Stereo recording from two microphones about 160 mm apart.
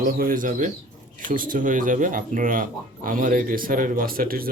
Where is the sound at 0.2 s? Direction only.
60° right (ahead or behind).